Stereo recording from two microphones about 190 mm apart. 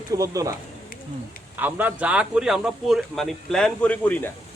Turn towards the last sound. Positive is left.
turn(degrees=5)  # may be behind; listen again after turning